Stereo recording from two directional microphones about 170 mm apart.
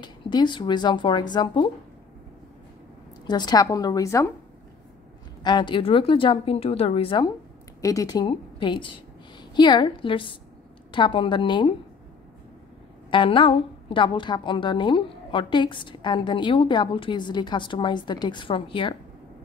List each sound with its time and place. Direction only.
0.0 s a woman's voice: 25° left (ahead or behind)
3.3 s a woman's voice: 25° left (ahead or behind)
5.4 s a woman's voice: 25° left (ahead or behind)
13.1 s a woman's voice: 30° left (ahead or behind)